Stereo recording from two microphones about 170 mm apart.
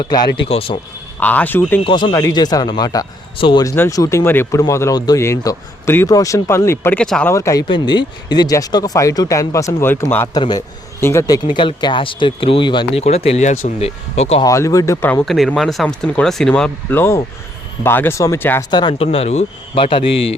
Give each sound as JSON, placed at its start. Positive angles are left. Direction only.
{"t": 0.0, "sound": "speech", "side_deg": 25}
{"t": 0.4, "sound": "speech", "side_deg": 35}
{"t": 1.2, "sound": "a man's voice", "side_deg": 10}
{"t": 1.8, "sound": "a man's voice", "side_deg": 30}
{"t": 7.3, "sound": "a man's voice", "side_deg": 20}
{"t": 11.4, "sound": "speech", "side_deg": 30}
{"t": 14.4, "sound": "a man's voice", "side_deg": 20}
{"t": 15.3, "sound": "a man's voice", "side_deg": 0}
{"t": 18.7, "sound": "speech", "side_deg": 25}